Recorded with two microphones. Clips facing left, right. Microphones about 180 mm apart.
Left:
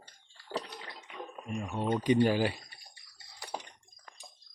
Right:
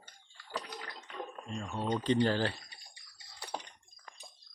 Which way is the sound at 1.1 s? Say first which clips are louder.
Left 2 dB; 10° left (ahead or behind).